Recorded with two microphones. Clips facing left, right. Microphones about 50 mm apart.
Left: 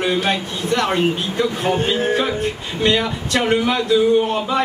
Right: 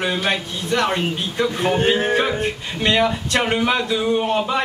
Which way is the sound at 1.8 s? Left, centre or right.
Right.